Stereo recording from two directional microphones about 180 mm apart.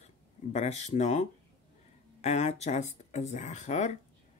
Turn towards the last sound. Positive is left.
turn(degrees=40)  # may be behind; listen again after turning